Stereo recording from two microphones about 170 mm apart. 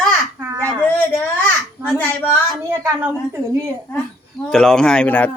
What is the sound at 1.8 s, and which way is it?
Speech, 10° left (ahead or behind).